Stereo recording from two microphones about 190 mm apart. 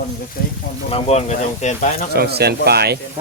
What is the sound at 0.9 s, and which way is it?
Speech, 35° left (ahead or behind).